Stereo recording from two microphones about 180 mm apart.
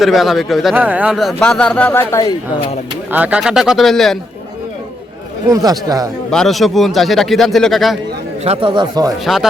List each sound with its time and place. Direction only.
0.0 s speech: centre (ahead or behind)
3.1 s speech: 10° right (ahead or behind)
5.5 s speech: 20° right (ahead or behind)
6.3 s speech: centre (ahead or behind)
8.4 s speech: 30° right (ahead or behind)
9.2 s speech: centre (ahead or behind)